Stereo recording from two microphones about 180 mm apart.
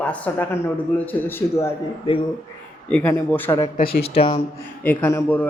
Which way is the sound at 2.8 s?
5° left (ahead or behind).